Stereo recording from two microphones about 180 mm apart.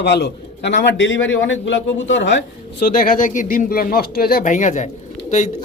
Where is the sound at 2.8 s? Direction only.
50° left (ahead or behind).